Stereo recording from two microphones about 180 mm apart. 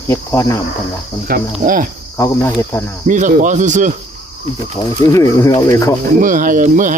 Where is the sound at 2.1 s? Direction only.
15° left (ahead or behind).